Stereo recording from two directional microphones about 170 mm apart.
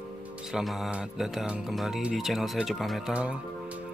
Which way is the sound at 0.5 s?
Centre (ahead or behind).